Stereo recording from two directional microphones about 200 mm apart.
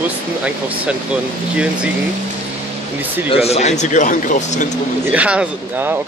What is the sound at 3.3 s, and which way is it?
Speech, 30° left (ahead or behind).